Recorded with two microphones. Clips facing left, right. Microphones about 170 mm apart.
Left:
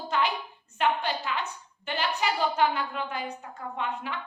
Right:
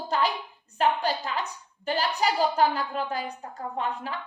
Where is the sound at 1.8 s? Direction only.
35° right (ahead or behind).